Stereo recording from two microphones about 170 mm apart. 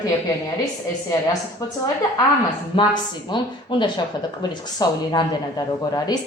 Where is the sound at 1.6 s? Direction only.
20° left (ahead or behind).